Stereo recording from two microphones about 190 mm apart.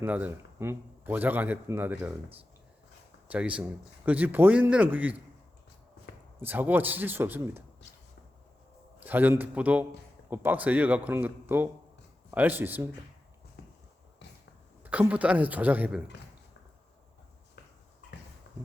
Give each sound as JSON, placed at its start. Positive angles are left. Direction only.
{"t": 0.0, "sound": "a man's voice", "side_deg": -10}
{"t": 3.2, "sound": "a man's voice", "side_deg": -5}
{"t": 6.4, "sound": "a man's voice", "side_deg": -10}
{"t": 9.0, "sound": "a man's voice", "side_deg": -10}
{"t": 13.6, "sound": "a sound", "side_deg": 55}
{"t": 14.8, "sound": "a man's voice", "side_deg": -5}
{"t": 18.5, "sound": "a sound", "side_deg": 60}